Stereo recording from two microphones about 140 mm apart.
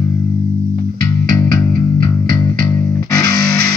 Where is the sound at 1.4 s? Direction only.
25° left (ahead or behind).